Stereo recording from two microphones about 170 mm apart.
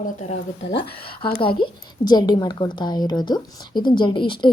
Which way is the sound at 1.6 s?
25° left (ahead or behind).